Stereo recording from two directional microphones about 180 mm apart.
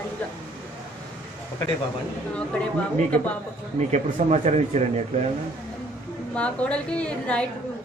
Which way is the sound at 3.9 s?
40° right (ahead or behind).